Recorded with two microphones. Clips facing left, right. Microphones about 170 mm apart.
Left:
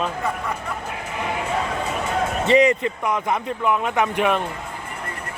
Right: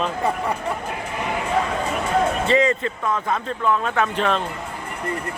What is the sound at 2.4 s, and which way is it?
Speech, 20° left (ahead or behind).